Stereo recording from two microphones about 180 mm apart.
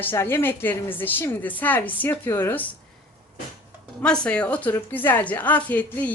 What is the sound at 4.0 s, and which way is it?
A woman's voice, 5° left (ahead or behind).